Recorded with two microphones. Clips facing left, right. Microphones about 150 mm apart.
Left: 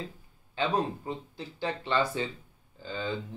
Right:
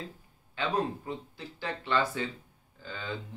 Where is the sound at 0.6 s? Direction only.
30° left (ahead or behind).